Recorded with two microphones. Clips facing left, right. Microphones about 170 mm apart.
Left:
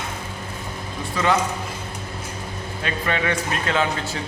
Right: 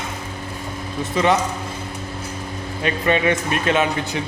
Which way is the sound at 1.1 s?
20° right (ahead or behind).